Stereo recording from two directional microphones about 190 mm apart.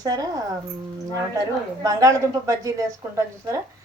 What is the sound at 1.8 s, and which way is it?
A woman's voice, 15° right (ahead or behind).